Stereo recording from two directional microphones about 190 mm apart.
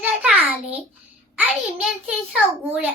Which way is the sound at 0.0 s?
5° right (ahead or behind).